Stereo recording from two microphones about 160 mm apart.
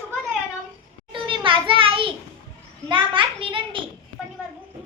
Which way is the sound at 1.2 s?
30° right (ahead or behind).